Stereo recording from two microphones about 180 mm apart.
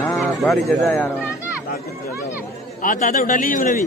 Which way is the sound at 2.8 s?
50° left (ahead or behind).